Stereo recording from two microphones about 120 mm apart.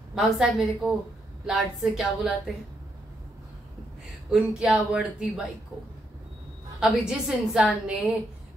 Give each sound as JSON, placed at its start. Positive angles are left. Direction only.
{"t": 0.1, "sound": "a woman's voice", "side_deg": 0}
{"t": 4.3, "sound": "speech", "side_deg": -5}
{"t": 6.8, "sound": "a woman's voice", "side_deg": -5}